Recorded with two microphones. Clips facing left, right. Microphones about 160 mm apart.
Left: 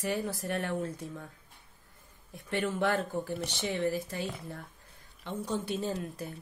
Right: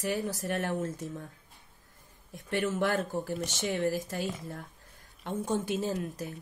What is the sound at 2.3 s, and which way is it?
Speech, 40° right (ahead or behind).